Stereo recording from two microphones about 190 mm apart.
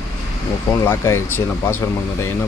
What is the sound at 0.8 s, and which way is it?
Speech, 15° left (ahead or behind).